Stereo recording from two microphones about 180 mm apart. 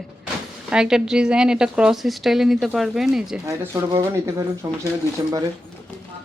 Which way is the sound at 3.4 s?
15° right (ahead or behind).